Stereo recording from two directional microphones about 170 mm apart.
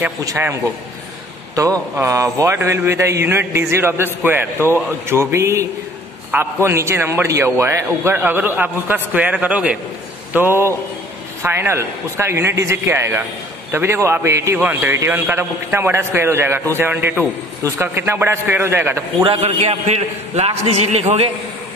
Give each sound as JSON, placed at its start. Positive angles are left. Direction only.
{"t": 0.0, "sound": "a man's voice", "side_deg": -15}
{"t": 19.2, "sound": "a man's voice", "side_deg": -30}